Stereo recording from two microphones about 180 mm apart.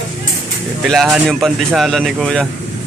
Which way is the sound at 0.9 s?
Centre (ahead or behind).